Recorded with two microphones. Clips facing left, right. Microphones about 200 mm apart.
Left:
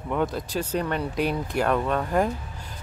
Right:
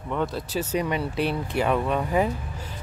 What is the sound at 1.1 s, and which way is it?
Speech, 40° left (ahead or behind).